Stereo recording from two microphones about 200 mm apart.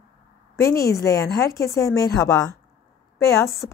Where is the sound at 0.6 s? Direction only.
15° left (ahead or behind).